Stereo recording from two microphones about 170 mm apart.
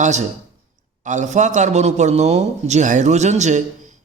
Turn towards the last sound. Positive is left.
turn(degrees=-45)  # may be behind; listen again after turning